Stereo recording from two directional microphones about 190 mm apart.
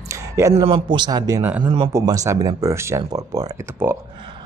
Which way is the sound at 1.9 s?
15° right (ahead or behind).